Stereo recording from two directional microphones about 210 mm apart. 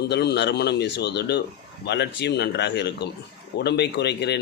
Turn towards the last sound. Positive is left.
turn(degrees=55)  # may be behind; listen again after turning